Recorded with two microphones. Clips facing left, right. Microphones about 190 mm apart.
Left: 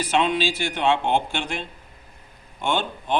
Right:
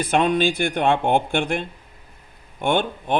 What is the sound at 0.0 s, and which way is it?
Speech, 50° right (ahead or behind).